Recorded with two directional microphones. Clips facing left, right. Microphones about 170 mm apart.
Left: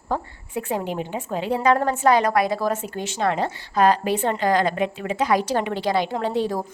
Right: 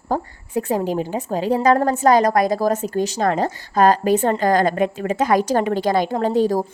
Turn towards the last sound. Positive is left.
turn(degrees=-40)  # may be behind; listen again after turning